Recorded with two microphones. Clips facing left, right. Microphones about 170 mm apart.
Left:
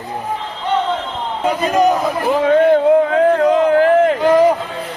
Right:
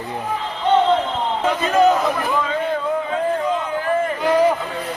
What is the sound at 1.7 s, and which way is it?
Speech, 15° left (ahead or behind).